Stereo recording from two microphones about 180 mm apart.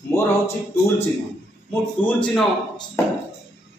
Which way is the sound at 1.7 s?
10° left (ahead or behind).